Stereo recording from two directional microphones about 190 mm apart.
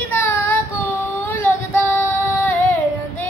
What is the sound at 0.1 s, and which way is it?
Child singing, 10° left (ahead or behind).